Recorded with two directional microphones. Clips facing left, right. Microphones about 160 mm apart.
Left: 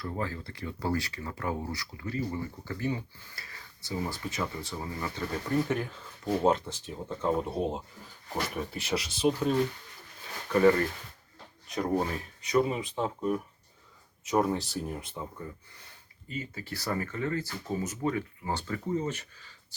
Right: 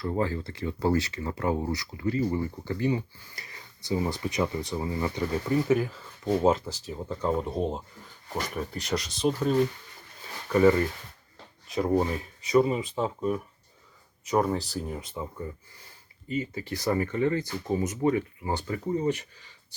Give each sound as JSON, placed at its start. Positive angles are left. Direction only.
{"t": 0.0, "sound": "speech", "side_deg": -25}
{"t": 16.3, "sound": "speech", "side_deg": -10}